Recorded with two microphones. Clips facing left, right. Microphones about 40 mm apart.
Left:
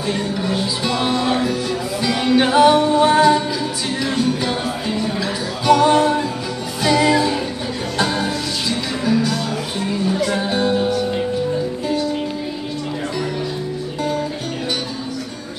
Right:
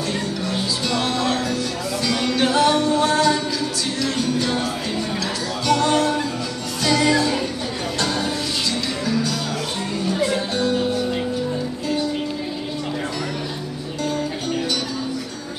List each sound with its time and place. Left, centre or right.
0.1 s music: centre
5.7 s music: centre
10.5 s music: centre